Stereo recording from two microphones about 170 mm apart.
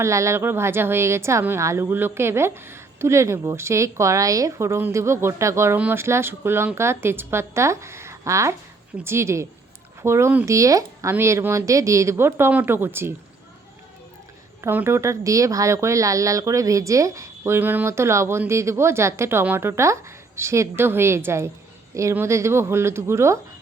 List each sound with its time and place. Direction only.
0.0 s speech: 15° right (ahead or behind)
14.6 s speech: 15° right (ahead or behind)